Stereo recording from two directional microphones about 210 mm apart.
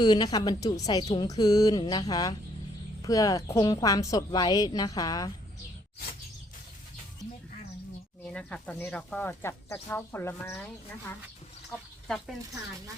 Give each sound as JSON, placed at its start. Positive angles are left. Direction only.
{"t": 0.0, "sound": "a woman's voice", "side_deg": 20}
{"t": 8.3, "sound": "speech", "side_deg": 5}